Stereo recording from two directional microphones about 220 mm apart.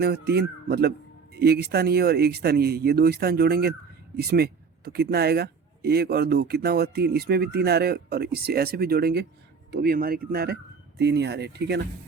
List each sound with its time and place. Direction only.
0.0 s a man's voice: 45° right (ahead or behind)